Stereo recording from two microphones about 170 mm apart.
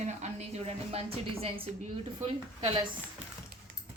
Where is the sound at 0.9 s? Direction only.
35° right (ahead or behind).